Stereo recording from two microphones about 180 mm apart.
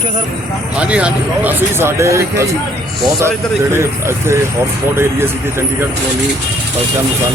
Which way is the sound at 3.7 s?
15° right (ahead or behind).